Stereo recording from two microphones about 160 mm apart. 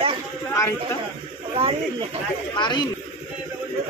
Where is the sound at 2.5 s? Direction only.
30° left (ahead or behind).